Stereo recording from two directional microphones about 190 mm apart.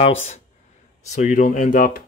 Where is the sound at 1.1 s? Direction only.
40° left (ahead or behind).